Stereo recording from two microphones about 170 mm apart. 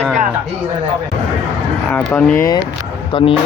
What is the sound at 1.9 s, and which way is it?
Speech, 10° left (ahead or behind).